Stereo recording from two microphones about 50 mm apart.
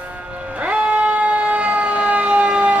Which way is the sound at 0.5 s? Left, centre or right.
Right.